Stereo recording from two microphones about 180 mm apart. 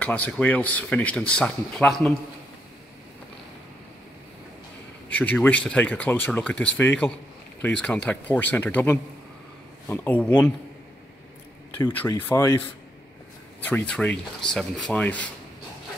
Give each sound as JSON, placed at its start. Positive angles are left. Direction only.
{"t": 0.0, "sound": "speech", "side_deg": 5}
{"t": 5.1, "sound": "speech", "side_deg": 10}
{"t": 12.1, "sound": "speech", "side_deg": 15}
{"t": 13.7, "sound": "speech", "side_deg": 10}